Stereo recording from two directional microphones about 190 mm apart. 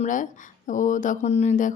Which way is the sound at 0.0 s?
40° left (ahead or behind).